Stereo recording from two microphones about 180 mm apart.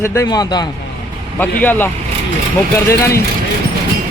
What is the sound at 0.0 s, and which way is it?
Speech, 15° left (ahead or behind).